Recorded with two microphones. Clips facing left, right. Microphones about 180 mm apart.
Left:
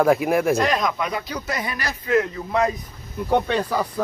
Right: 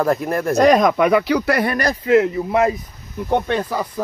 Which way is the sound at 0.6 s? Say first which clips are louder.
Right 9 dB; 50° right (ahead or behind).